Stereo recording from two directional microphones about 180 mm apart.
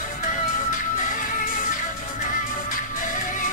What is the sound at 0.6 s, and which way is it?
Music, 45° left (ahead or behind).